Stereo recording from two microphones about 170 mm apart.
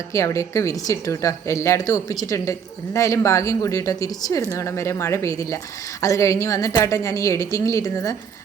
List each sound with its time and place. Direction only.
0.1 s a woman's voice: 20° left (ahead or behind)